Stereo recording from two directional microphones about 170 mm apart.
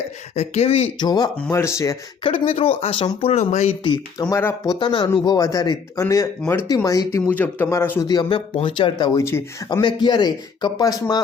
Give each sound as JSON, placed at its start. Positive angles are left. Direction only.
{"t": 0.3, "sound": "speech", "side_deg": 35}
{"t": 1.4, "sound": "speech", "side_deg": 10}
{"t": 2.2, "sound": "speech", "side_deg": 35}
{"t": 3.8, "sound": "speech", "side_deg": 25}
{"t": 4.4, "sound": "speech", "side_deg": 15}
{"t": 4.8, "sound": "speech", "side_deg": 25}
{"t": 8.0, "sound": "speech", "side_deg": 25}
{"t": 9.1, "sound": "speech", "side_deg": 15}